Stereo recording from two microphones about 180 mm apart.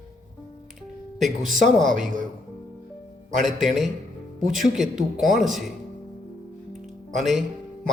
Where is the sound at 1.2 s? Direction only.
45° right (ahead or behind).